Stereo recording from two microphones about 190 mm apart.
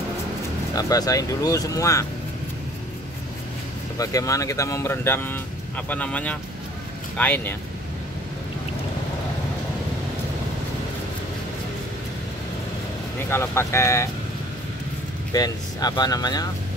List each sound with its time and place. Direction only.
0.7 s speech: 20° left (ahead or behind)
4.0 s speech: 15° left (ahead or behind)
13.3 s speech: 15° left (ahead or behind)
15.3 s speech: 20° left (ahead or behind)